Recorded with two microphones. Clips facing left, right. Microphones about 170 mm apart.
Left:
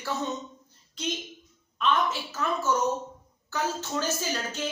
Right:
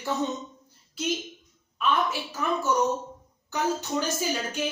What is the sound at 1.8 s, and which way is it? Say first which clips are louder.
A woman's voice: even; 10° right (ahead or behind).